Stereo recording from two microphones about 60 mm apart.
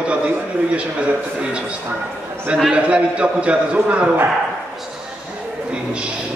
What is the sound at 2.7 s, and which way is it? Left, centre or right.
A man's voice, centre.